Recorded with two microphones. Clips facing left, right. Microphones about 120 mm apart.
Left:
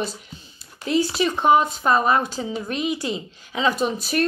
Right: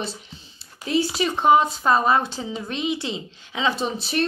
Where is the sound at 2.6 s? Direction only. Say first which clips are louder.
Left 1 dB; 25° right (ahead or behind).